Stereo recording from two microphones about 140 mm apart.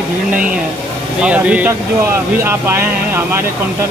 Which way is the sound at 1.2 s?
10° right (ahead or behind).